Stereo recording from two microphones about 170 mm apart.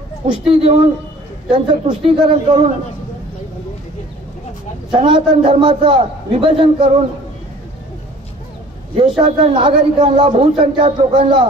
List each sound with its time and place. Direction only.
0.3 s a man's voice: 35° right (ahead or behind)
4.9 s a man's voice: 30° right (ahead or behind)
8.9 s a man's voice: 35° right (ahead or behind)